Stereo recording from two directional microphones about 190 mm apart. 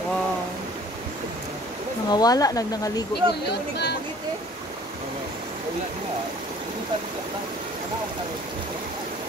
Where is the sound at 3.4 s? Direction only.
60° left (ahead or behind).